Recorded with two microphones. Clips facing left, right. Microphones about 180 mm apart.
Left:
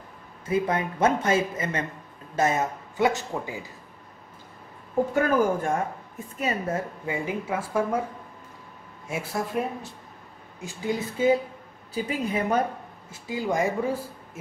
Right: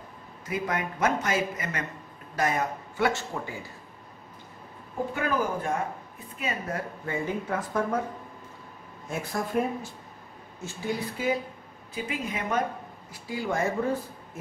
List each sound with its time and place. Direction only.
0.5 s speech: 30° left (ahead or behind)
5.1 s a woman's voice: 45° left (ahead or behind)
7.1 s speech: 10° left (ahead or behind)
9.0 s speech: 5° left (ahead or behind)
10.6 s speech: 20° left (ahead or behind)
11.9 s a woman's voice: 35° left (ahead or behind)
13.1 s speech: 20° left (ahead or behind)